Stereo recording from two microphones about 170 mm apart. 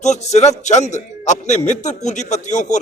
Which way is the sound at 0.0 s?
40° left (ahead or behind).